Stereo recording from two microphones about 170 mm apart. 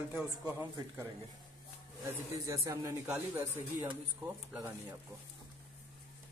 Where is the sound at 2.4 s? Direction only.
20° right (ahead or behind).